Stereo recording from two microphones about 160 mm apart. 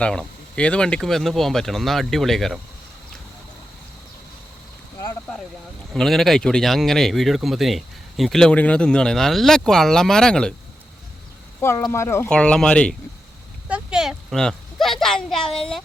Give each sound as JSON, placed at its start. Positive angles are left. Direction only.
{"t": 0.0, "sound": "speech", "side_deg": 5}
{"t": 5.9, "sound": "speech", "side_deg": 0}
{"t": 11.6, "sound": "speech", "side_deg": 15}
{"t": 12.3, "sound": "speech", "side_deg": 5}
{"t": 13.7, "sound": "a sound", "side_deg": -5}